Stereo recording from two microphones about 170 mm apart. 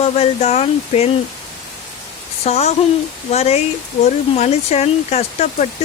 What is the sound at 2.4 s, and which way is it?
Speech, 40° left (ahead or behind).